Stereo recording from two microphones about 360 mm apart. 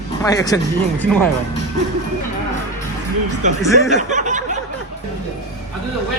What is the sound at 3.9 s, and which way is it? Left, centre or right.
Speech, centre.